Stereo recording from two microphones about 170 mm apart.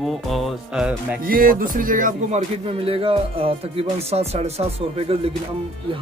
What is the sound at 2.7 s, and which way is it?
Speech, 35° right (ahead or behind).